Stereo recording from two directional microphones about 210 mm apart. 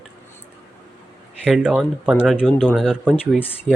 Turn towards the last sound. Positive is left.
turn(degrees=10)  # may be behind; listen again after turning